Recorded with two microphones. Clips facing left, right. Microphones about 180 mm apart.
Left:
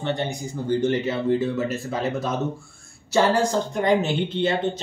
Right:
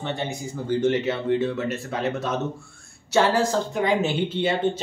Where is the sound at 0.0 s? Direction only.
Centre (ahead or behind).